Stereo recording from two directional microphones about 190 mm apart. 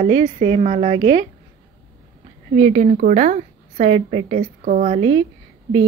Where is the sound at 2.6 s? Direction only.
40° right (ahead or behind).